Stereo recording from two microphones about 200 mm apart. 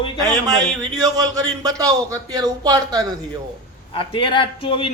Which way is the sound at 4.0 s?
25° left (ahead or behind).